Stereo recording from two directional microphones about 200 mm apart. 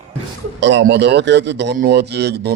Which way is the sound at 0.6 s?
65° right (ahead or behind).